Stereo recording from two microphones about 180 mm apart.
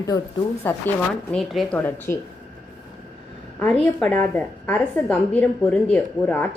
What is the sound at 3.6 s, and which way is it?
A woman's voice, 5° left (ahead or behind).